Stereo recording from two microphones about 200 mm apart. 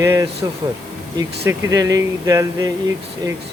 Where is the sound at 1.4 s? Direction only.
15° right (ahead or behind).